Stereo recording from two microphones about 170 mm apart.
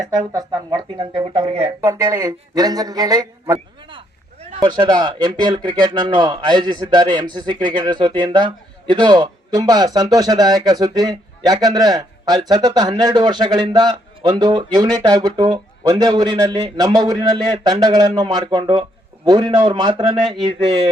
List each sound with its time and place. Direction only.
0.3 s speech: 30° right (ahead or behind)
1.8 s speech: 20° right (ahead or behind)
3.8 s a sound: 35° right (ahead or behind)
4.6 s speech: 25° right (ahead or behind)